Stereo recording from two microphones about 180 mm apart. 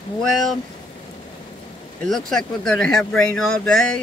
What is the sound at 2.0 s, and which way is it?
Speech, centre (ahead or behind).